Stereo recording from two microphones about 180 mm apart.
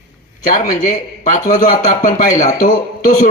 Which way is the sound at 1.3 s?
45° left (ahead or behind).